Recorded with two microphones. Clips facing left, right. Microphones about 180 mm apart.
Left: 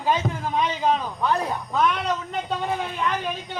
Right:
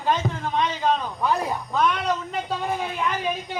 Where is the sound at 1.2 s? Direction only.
5° right (ahead or behind).